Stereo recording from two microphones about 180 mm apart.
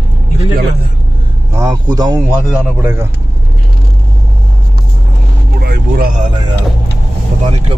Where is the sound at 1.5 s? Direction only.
20° right (ahead or behind).